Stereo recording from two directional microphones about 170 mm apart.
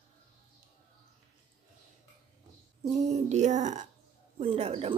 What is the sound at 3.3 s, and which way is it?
A man's voice, 45° right (ahead or behind).